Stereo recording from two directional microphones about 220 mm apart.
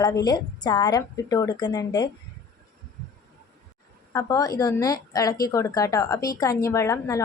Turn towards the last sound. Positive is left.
turn(degrees=15)  # may be behind; listen again after turning